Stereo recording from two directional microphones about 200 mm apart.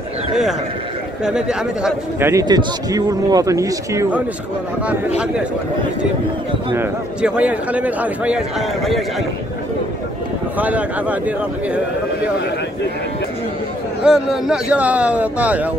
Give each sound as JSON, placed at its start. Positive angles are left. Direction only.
{"t": 1.2, "sound": "a man's voice", "side_deg": -5}
{"t": 6.7, "sound": "a man's voice", "side_deg": -10}
{"t": 10.6, "sound": "a man's voice", "side_deg": -5}
{"t": 14.0, "sound": "a man's voice", "side_deg": -5}